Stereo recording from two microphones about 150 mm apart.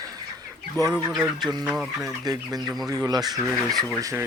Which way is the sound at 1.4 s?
25° right (ahead or behind).